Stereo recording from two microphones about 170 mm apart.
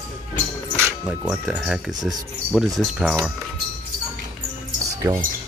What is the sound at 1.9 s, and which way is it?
Speech, 20° right (ahead or behind).